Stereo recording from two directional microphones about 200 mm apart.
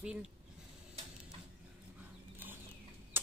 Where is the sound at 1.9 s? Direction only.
10° right (ahead or behind).